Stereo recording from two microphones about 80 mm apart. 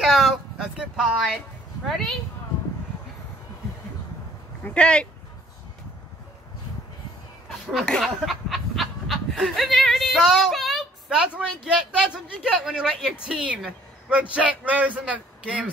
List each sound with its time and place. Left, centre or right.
0.0 s a sound: centre
1.9 s speech: centre
4.6 s speech: centre
7.8 s speech: centre
8.3 s snicker: centre
11.1 s speech: centre